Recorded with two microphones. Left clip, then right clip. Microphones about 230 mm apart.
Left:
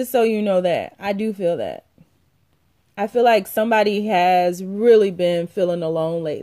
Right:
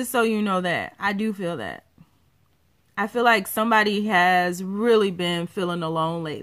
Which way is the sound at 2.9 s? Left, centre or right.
Centre.